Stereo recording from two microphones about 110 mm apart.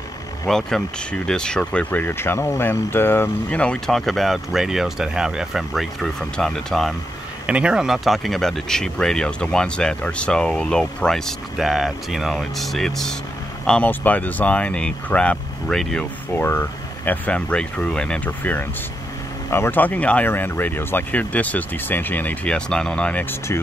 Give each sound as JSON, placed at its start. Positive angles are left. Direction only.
{"t": 0.5, "sound": "speech", "side_deg": 5}
{"t": 7.4, "sound": "speech", "side_deg": -10}
{"t": 16.3, "sound": "speech", "side_deg": 20}
{"t": 23.5, "sound": "speech", "side_deg": 20}